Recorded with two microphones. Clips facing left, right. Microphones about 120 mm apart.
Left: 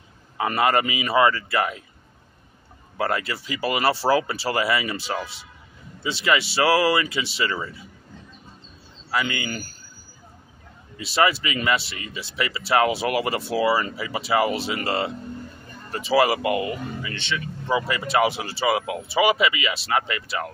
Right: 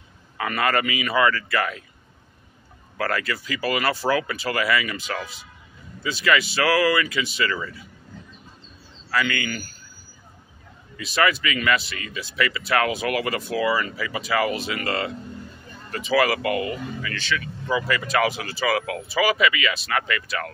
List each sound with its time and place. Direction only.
0.4 s speech: 25° left (ahead or behind)
3.0 s speech: 25° left (ahead or behind)
9.1 s speech: 25° left (ahead or behind)
11.0 s speech: 25° left (ahead or behind)